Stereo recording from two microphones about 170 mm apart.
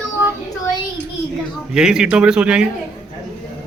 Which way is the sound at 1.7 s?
5° right (ahead or behind).